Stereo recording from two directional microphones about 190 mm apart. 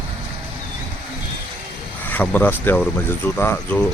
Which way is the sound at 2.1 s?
10° left (ahead or behind).